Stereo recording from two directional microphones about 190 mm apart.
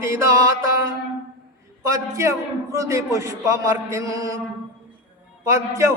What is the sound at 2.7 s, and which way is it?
A man's voice, 15° right (ahead or behind).